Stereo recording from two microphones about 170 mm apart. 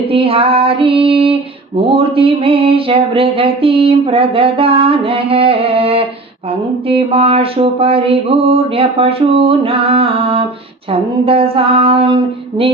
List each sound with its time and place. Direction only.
0.1 s female singing: 35° right (ahead or behind)